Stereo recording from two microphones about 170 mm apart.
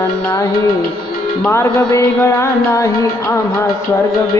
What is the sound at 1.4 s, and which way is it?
Music, 10° left (ahead or behind).